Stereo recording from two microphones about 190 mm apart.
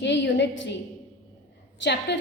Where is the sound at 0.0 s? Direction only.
70° left (ahead or behind).